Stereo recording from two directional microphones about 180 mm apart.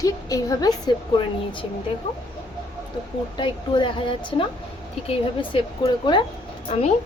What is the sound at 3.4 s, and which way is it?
A woman's voice, 25° left (ahead or behind).